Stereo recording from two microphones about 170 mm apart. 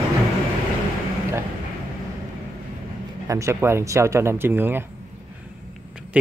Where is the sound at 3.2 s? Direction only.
15° right (ahead or behind).